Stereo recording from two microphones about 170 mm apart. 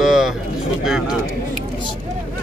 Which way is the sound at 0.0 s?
5° right (ahead or behind).